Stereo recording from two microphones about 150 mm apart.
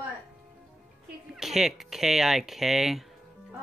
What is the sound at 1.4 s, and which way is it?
Speech, centre (ahead or behind).